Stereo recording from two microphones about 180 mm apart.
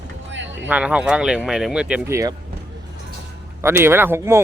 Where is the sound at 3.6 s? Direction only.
15° right (ahead or behind).